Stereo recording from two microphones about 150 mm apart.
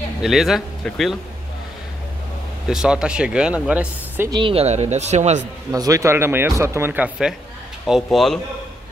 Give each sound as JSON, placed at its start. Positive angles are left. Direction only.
{"t": 0.2, "sound": "speech", "side_deg": 0}
{"t": 2.7, "sound": "speech", "side_deg": -5}
{"t": 4.3, "sound": "speech", "side_deg": -35}
{"t": 5.7, "sound": "speech", "side_deg": -20}